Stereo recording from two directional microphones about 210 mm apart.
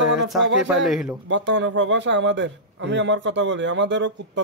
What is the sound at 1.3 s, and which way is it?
A man's voice, 60° right (ahead or behind).